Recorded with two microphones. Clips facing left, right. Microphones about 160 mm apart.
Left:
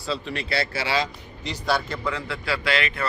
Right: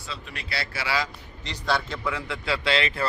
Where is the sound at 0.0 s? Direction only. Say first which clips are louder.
Left 9 dB; 30° left (ahead or behind).